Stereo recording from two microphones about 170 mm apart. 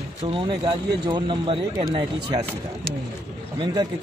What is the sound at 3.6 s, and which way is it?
Speech, 25° right (ahead or behind).